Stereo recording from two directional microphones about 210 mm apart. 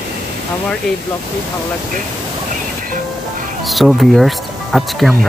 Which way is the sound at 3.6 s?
Centre (ahead or behind).